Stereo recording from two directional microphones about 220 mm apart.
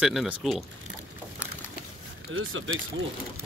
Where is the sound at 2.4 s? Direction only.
65° right (ahead or behind).